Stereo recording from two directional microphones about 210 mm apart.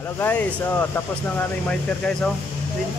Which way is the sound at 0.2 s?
10° left (ahead or behind).